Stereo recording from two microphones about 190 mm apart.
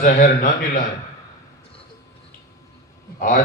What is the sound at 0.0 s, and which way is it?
Speech, 45° left (ahead or behind).